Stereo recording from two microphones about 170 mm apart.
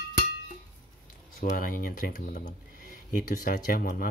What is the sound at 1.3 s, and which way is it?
Speech, 55° left (ahead or behind).